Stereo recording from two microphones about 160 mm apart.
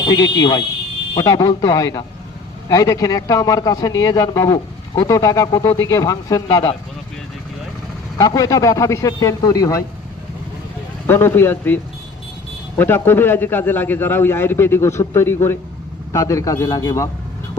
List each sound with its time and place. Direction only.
0.0 s a man's voice: 25° left (ahead or behind)
8.2 s a man's voice: 20° left (ahead or behind)
11.0 s a man's voice: 15° left (ahead or behind)